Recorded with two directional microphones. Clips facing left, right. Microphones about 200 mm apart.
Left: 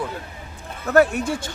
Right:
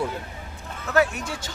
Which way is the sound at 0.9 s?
55° left (ahead or behind).